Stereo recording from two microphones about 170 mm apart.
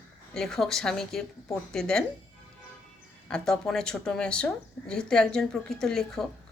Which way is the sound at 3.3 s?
5° left (ahead or behind).